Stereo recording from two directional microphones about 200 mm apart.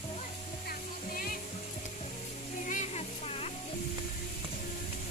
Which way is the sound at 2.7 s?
35° left (ahead or behind).